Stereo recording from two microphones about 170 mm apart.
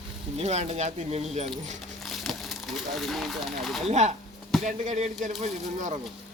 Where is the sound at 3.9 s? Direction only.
45° right (ahead or behind).